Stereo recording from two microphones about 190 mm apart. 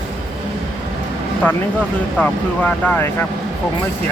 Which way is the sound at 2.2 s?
5° left (ahead or behind).